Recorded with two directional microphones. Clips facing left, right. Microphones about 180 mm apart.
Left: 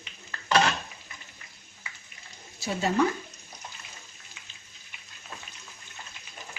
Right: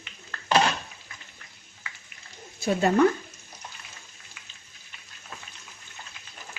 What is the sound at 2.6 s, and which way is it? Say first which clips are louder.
Speech: right 5 dB; 55° right (ahead or behind).